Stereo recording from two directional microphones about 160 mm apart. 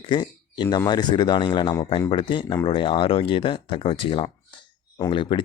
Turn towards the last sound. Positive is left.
turn(degrees=30)  # may be behind; listen again after turning